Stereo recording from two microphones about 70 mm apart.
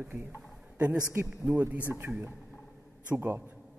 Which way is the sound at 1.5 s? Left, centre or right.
Right.